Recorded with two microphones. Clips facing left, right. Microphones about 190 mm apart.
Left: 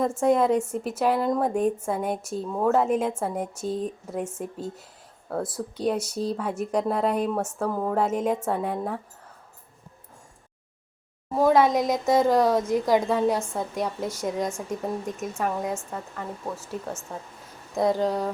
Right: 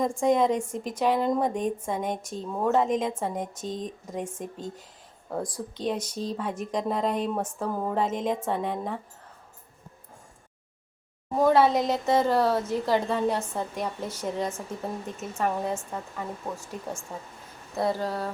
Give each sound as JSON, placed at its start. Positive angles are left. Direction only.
{"t": 0.0, "sound": "a woman's voice", "side_deg": 5}
{"t": 11.3, "sound": "a woman's voice", "side_deg": 10}
{"t": 15.9, "sound": "speech", "side_deg": 0}
{"t": 17.7, "sound": "a woman's voice", "side_deg": 15}